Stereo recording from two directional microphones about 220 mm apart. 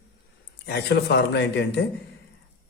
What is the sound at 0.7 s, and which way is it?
Speech, 50° left (ahead or behind).